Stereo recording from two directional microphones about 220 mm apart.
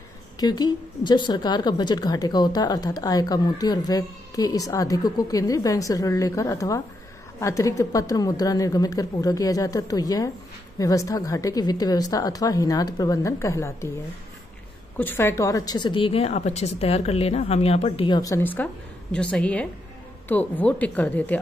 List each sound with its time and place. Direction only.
0.4 s a woman's voice: 20° left (ahead or behind)
15.0 s a woman's voice: 10° left (ahead or behind)